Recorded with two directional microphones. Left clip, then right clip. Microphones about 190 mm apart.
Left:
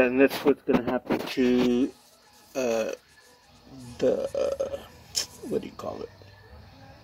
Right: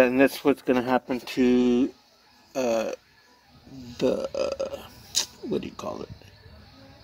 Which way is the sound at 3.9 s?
45° right (ahead or behind).